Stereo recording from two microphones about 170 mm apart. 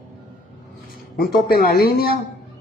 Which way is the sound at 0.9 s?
60° left (ahead or behind).